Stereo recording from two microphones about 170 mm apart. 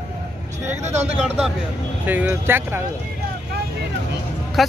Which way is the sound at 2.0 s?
10° right (ahead or behind).